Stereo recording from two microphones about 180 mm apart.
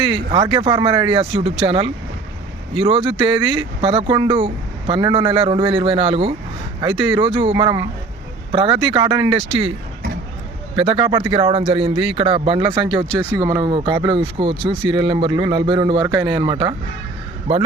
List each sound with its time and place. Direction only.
0.0 s speech: 30° right (ahead or behind)
10.8 s speech: 30° right (ahead or behind)